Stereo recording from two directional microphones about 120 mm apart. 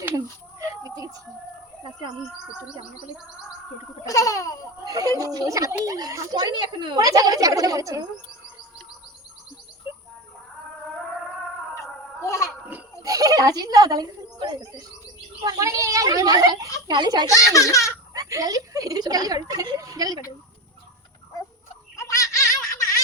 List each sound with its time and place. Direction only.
0.6 s a sound: 30° right (ahead or behind)
4.0 s speech: 30° left (ahead or behind)
4.9 s speech: 30° right (ahead or behind)
9.9 s a sound: 20° right (ahead or behind)
12.2 s a sound: 25° left (ahead or behind)
13.0 s a child's voice: 30° right (ahead or behind)
17.2 s a child's voice: 25° left (ahead or behind)
18.1 s speech: 30° right (ahead or behind)
21.9 s baby laughter: 25° left (ahead or behind)